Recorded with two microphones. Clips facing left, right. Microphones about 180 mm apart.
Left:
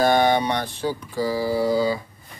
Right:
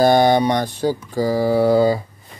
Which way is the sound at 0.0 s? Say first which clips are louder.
Right 5 dB; 40° right (ahead or behind).